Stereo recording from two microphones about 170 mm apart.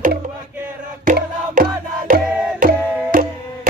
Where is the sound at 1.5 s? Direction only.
55° right (ahead or behind).